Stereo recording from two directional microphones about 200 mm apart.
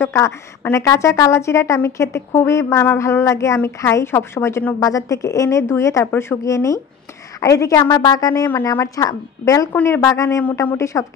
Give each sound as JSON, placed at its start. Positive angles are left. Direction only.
{"t": 0.0, "sound": "a woman's voice", "side_deg": 15}